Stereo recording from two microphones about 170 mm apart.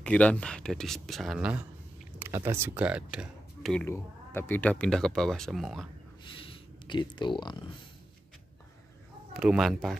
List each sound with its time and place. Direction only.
0.0 s speech: 5° left (ahead or behind)
3.7 s speech: 15° left (ahead or behind)
6.2 s a sound: 30° left (ahead or behind)
9.3 s speech: 5° right (ahead or behind)